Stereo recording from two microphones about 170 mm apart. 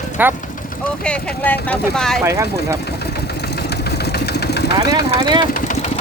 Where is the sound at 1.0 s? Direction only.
5° left (ahead or behind).